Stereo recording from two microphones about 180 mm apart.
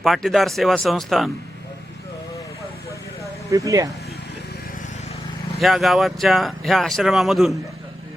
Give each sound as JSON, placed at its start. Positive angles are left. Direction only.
{"t": 0.0, "sound": "speech", "side_deg": 0}
{"t": 3.5, "sound": "speech", "side_deg": -20}
{"t": 5.5, "sound": "speech", "side_deg": 0}